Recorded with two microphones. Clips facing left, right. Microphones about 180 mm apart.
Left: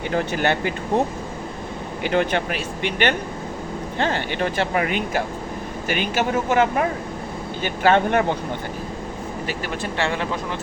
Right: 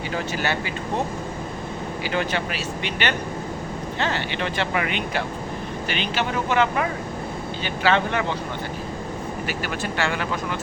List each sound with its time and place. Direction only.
0.1 s speech: 55° left (ahead or behind)
2.0 s speech: 55° left (ahead or behind)
9.5 s speech: 30° left (ahead or behind)